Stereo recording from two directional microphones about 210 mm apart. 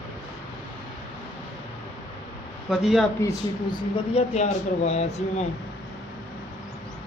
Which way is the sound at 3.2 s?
20° left (ahead or behind).